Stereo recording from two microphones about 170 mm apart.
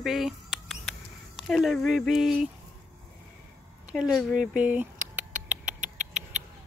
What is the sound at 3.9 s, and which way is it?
Speech, centre (ahead or behind).